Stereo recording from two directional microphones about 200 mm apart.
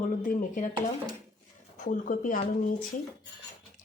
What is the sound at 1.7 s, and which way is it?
Speech, 40° left (ahead or behind).